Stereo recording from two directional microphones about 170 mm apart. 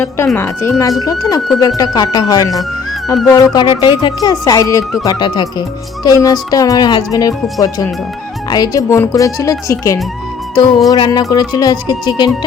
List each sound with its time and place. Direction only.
0.3 s speech: 15° left (ahead or behind)
8.4 s speech: 20° left (ahead or behind)